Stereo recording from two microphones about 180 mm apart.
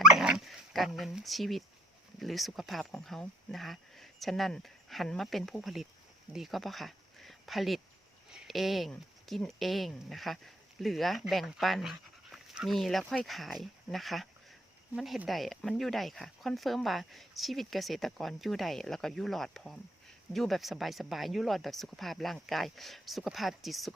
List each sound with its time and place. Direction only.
0.0 s dog: 5° right (ahead or behind)
2.1 s speech: centre (ahead or behind)